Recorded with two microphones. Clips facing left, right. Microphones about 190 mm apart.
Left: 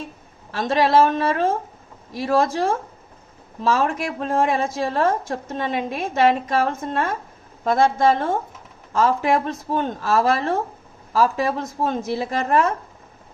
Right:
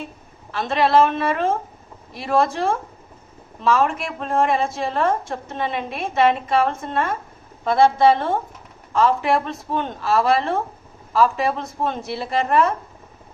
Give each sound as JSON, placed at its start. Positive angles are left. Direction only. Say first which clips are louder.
{"t": 0.5, "sound": "a woman's voice", "louder": "even", "side_deg": 40}